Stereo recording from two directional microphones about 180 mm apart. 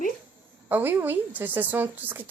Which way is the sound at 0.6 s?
10° right (ahead or behind).